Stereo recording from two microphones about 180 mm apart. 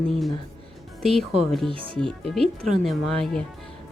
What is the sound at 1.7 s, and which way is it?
Speech, 30° right (ahead or behind).